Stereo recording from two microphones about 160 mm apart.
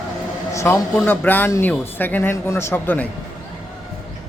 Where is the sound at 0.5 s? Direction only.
15° left (ahead or behind).